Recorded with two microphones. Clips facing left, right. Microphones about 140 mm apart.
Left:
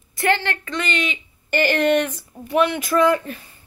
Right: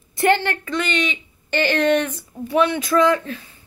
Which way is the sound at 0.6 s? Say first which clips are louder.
Right 2 dB; 5° right (ahead or behind).